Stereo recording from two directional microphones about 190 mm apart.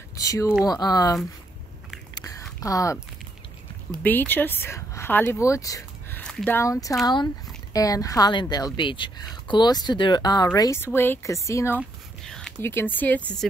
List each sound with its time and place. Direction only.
0.1 s speech: 15° left (ahead or behind)
2.1 s a sound: 15° left (ahead or behind)
2.6 s speech: 15° left (ahead or behind)
4.0 s speech: 10° left (ahead or behind)
12.3 s speech: 5° left (ahead or behind)